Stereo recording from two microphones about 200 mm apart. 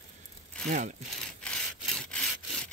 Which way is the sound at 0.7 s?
35° right (ahead or behind).